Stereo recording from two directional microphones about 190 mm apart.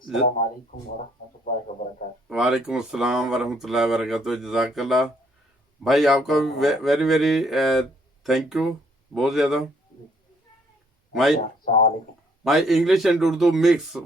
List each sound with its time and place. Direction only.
1.8 s a man's voice: 45° left (ahead or behind)
2.3 s speech: centre (ahead or behind)
11.1 s speech: centre (ahead or behind)
11.3 s speech: 50° left (ahead or behind)
12.5 s speech: centre (ahead or behind)